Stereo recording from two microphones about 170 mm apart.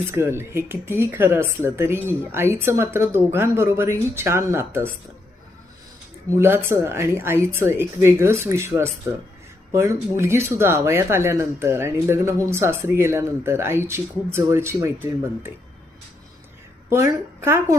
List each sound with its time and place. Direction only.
0.1 s speech: 15° right (ahead or behind)
6.3 s speech: 15° right (ahead or behind)
16.9 s speech: 15° right (ahead or behind)